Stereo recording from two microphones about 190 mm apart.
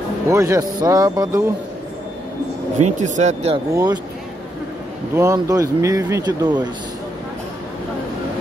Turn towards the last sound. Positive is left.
turn(degrees=-20)  # may be behind; listen again after turning